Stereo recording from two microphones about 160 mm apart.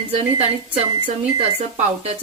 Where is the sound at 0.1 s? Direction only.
40° right (ahead or behind).